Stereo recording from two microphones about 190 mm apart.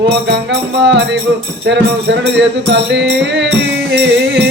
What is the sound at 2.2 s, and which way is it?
Music, 65° right (ahead or behind).